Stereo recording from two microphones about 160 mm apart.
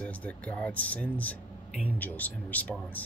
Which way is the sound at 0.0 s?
10° left (ahead or behind).